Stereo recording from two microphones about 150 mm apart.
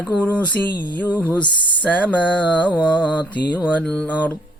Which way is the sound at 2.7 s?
10° right (ahead or behind).